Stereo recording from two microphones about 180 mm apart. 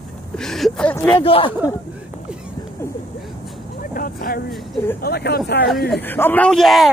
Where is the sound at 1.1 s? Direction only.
30° left (ahead or behind).